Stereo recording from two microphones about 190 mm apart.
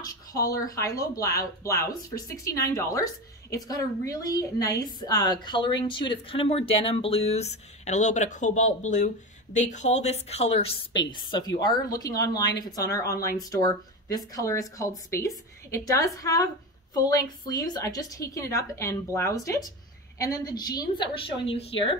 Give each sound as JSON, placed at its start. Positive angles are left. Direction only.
{"t": 0.3, "sound": "a woman's voice", "side_deg": 20}